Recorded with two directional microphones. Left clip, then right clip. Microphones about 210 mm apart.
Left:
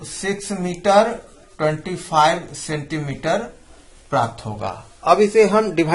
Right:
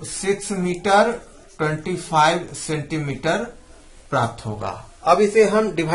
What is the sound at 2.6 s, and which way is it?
Speech, 35° left (ahead or behind).